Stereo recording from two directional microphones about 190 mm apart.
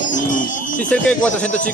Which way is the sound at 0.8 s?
5° left (ahead or behind).